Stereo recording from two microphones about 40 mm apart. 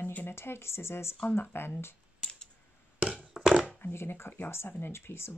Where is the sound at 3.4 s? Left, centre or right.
Right.